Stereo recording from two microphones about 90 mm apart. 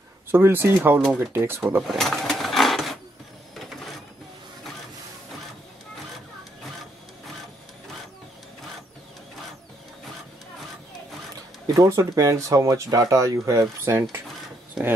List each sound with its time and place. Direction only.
0.3 s speech: 25° right (ahead or behind)
1.9 s sewing machine: centre (ahead or behind)
11.6 s speech: 40° right (ahead or behind)